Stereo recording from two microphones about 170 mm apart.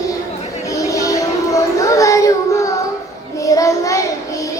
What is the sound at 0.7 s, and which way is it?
Music, 20° left (ahead or behind).